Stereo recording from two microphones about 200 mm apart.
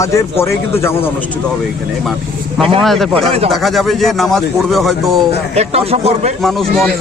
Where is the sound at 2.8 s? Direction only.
Centre (ahead or behind).